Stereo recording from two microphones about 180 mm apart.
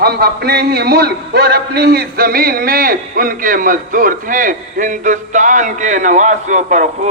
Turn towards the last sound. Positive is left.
turn(degrees=-40)  # may be behind; listen again after turning